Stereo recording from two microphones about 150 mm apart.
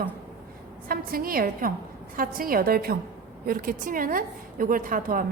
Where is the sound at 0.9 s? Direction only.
75° right (ahead or behind).